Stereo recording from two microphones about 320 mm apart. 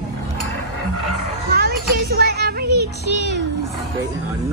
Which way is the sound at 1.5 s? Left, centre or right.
Right.